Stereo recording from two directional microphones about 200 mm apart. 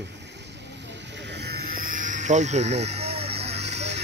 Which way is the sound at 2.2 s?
35° right (ahead or behind).